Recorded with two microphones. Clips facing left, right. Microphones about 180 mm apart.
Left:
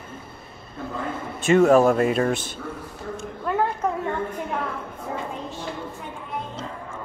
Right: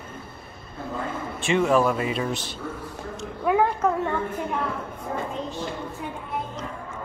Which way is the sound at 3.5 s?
10° right (ahead or behind).